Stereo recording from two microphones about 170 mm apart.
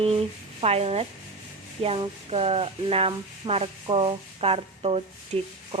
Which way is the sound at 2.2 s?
35° right (ahead or behind).